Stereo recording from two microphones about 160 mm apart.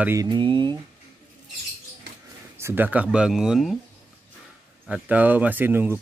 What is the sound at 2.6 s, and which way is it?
A man's voice, 15° right (ahead or behind).